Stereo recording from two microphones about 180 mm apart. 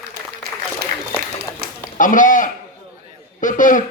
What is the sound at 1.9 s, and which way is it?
Speech, 45° left (ahead or behind).